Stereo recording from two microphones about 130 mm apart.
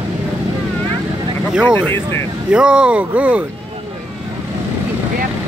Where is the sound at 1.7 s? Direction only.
20° left (ahead or behind).